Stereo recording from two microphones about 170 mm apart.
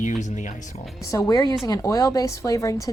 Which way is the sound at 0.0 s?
45° left (ahead or behind).